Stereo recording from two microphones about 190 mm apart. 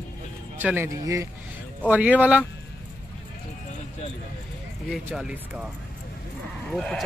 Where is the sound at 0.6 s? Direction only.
10° right (ahead or behind).